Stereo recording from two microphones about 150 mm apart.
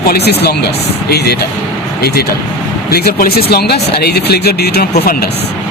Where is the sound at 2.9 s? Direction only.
90° left.